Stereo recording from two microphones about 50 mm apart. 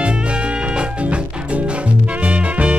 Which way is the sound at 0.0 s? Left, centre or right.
Right.